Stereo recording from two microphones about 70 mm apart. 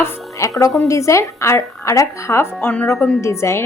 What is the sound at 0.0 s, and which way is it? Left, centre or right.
Music, left.